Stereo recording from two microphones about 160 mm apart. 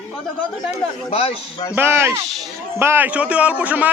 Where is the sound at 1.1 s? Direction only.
35° left (ahead or behind).